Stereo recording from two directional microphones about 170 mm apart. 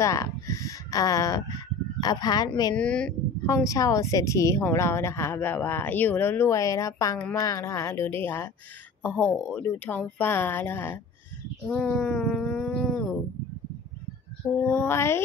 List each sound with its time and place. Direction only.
0.0 s speech: 20° left (ahead or behind)
2.7 s speech: 5° left (ahead or behind)
3.4 s a woman's voice: 20° left (ahead or behind)
11.6 s a sound: 5° left (ahead or behind)
14.7 s a woman's voice: 15° left (ahead or behind)